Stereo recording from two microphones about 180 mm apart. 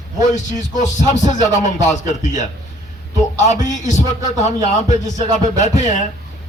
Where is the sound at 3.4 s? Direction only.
40° left (ahead or behind).